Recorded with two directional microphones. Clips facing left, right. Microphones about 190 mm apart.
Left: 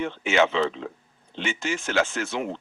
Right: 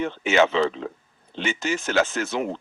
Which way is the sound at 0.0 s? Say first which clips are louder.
Right 2 dB; 40° right (ahead or behind).